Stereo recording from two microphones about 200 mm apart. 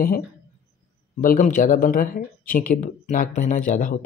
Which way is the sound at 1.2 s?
40° left (ahead or behind).